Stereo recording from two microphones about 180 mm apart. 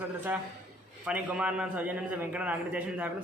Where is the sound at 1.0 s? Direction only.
5° right (ahead or behind).